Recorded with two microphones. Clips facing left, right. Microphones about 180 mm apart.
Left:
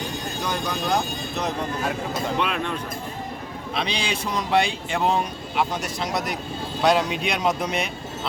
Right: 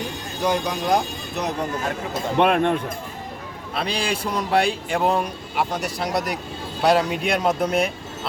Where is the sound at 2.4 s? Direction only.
55° right (ahead or behind).